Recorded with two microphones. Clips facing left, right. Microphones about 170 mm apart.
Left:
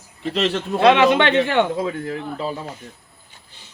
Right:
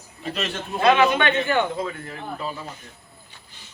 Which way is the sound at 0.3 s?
85° left.